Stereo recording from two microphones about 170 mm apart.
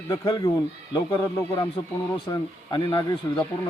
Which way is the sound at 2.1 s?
30° left (ahead or behind).